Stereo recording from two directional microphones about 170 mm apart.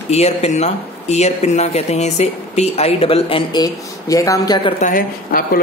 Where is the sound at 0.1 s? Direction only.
40° left (ahead or behind); by 4.6 s 20° left (ahead or behind).